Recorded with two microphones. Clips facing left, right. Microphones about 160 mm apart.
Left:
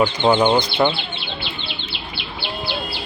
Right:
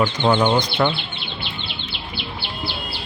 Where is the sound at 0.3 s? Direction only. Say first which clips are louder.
Left 2 dB; 10° left (ahead or behind).